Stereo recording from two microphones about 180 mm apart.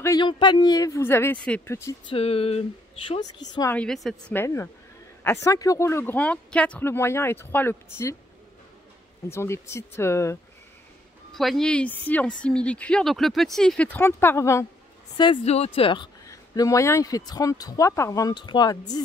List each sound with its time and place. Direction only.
0.0 s speech: 20° left (ahead or behind)
2.0 s a sound: 35° left (ahead or behind)
3.7 s speech: 5° left (ahead or behind)
9.3 s speech: 15° left (ahead or behind)
11.3 s speech: centre (ahead or behind)
15.4 s speech: 35° left (ahead or behind)